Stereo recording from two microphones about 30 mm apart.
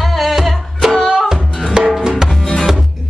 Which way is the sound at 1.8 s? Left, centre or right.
Right.